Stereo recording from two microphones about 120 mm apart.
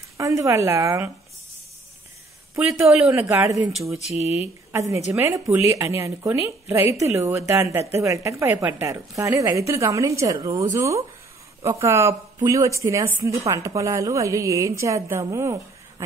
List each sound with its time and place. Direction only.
0.2 s a woman's voice: 25° right (ahead or behind)
2.6 s speech: 5° right (ahead or behind)
3.1 s a woman's voice: 20° right (ahead or behind)